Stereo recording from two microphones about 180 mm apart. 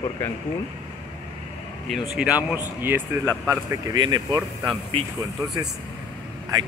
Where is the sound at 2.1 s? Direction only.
5° right (ahead or behind); by 4.4 s 20° right (ahead or behind).